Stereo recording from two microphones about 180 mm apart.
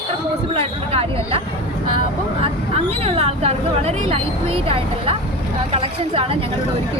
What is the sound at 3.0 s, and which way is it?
Speech, 35° right (ahead or behind).